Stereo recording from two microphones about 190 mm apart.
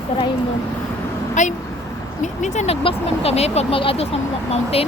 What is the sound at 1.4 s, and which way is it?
Speech, 40° left (ahead or behind).